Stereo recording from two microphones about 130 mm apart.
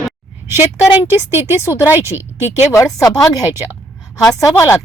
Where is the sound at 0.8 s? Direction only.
10° right (ahead or behind).